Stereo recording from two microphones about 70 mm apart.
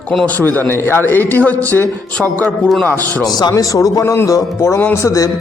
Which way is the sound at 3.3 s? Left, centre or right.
Left.